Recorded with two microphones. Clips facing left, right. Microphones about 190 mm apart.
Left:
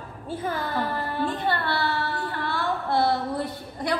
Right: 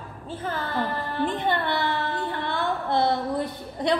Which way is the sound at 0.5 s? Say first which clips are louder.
Even; 10° left (ahead or behind).